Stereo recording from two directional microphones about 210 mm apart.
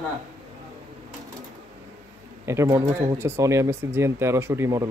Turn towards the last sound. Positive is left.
turn(degrees=-15)  # may be behind; listen again after turning